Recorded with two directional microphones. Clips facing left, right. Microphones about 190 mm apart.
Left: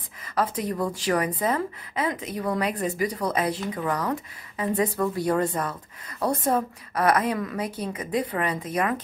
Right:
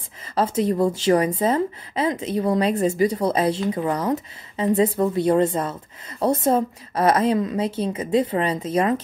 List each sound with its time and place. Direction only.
0.3 s a woman's voice: 25° right (ahead or behind)